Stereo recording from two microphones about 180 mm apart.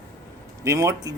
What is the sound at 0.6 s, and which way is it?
Speech, 15° right (ahead or behind).